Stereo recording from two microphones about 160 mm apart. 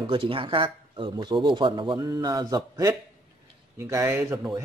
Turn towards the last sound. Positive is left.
turn(degrees=-20)  # may be behind; listen again after turning